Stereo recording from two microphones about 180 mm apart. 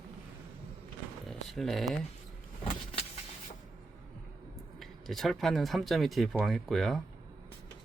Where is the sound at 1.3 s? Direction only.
Centre (ahead or behind).